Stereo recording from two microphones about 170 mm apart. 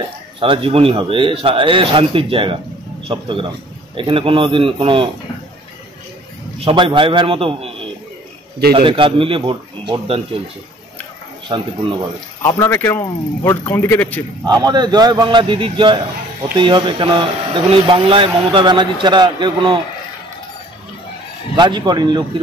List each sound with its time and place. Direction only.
0.4 s a man's voice: 30° right (ahead or behind)
6.6 s a man's voice: 30° right (ahead or behind)
8.7 s a man's voice: 30° right (ahead or behind)
11.5 s speech: 25° right (ahead or behind)
12.4 s speech: 15° left (ahead or behind)
14.4 s speech: 25° right (ahead or behind)
21.5 s speech: 25° right (ahead or behind)